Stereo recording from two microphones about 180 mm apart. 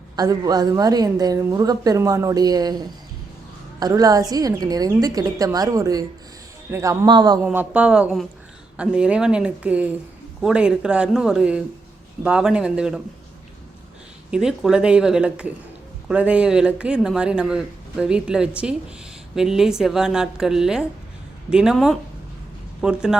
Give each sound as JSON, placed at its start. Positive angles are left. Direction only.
{"t": 0.2, "sound": "a woman's voice", "side_deg": -20}
{"t": 7.4, "sound": "speech", "side_deg": -10}
{"t": 14.3, "sound": "speech", "side_deg": -5}